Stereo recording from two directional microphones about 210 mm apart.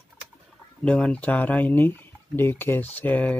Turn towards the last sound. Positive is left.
turn(degrees=5)  # may be behind; listen again after turning